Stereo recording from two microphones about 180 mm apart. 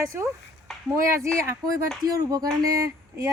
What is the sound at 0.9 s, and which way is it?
Speech, 15° right (ahead or behind).